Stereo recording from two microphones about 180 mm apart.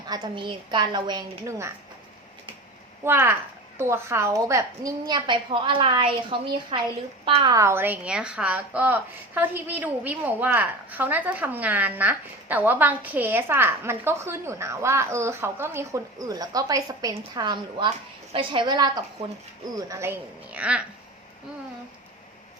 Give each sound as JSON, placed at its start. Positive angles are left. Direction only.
{"t": 0.1, "sound": "a woman's voice", "side_deg": -25}
{"t": 3.0, "sound": "a woman's voice", "side_deg": -10}